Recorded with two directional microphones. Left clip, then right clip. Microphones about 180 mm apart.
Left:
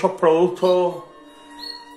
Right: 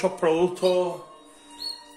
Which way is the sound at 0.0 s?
20° right (ahead or behind).